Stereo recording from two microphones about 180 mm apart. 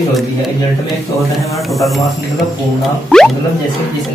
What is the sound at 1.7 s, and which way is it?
Speech, centre (ahead or behind).